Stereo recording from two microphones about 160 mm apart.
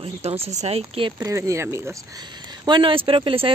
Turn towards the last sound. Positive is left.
turn(degrees=-35)  # may be behind; listen again after turning